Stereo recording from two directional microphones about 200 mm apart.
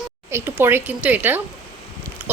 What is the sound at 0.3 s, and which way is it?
Speech, 10° right (ahead or behind).